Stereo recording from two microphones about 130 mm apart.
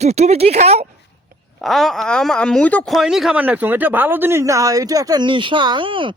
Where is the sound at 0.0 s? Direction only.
55° right (ahead or behind).